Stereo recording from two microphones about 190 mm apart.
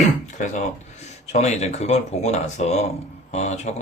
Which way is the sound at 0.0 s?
40° left (ahead or behind).